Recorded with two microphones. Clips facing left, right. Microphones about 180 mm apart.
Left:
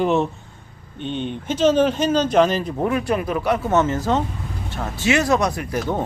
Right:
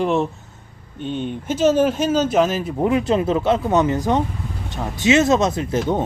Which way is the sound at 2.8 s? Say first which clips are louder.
Right 5 dB; 20° right (ahead or behind).